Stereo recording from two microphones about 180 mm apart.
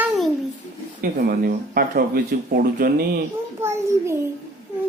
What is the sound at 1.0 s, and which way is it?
Speech, 55° right (ahead or behind).